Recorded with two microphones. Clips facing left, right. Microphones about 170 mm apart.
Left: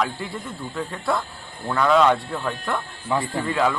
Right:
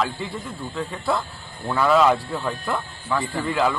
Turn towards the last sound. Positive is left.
turn(degrees=0)  # may be behind; listen again after turning